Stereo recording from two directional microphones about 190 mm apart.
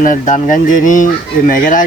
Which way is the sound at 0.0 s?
45° left (ahead or behind).